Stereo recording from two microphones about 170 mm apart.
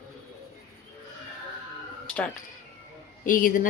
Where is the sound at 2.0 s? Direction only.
5° left (ahead or behind).